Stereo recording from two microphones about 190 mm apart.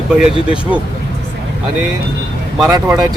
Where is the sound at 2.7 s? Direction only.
15° right (ahead or behind).